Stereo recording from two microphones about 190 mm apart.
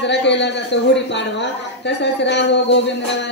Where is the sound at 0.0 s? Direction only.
65° left (ahead or behind).